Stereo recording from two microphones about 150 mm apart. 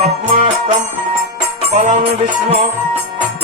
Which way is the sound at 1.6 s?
55° right (ahead or behind).